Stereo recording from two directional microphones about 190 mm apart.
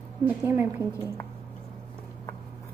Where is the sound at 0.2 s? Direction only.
10° right (ahead or behind).